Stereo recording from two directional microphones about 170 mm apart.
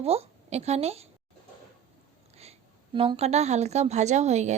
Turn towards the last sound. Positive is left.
turn(degrees=-40)  # may be behind; listen again after turning